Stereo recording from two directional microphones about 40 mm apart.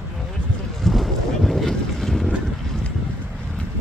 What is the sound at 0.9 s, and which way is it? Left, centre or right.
Boat, centre.